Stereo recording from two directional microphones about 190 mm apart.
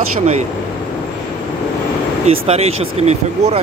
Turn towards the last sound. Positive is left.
turn(degrees=-35)  # may be behind; listen again after turning